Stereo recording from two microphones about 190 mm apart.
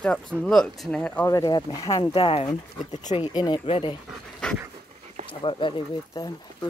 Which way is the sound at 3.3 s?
20° left (ahead or behind).